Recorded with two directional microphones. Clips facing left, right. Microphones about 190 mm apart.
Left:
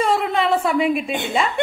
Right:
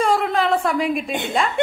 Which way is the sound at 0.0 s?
Centre (ahead or behind).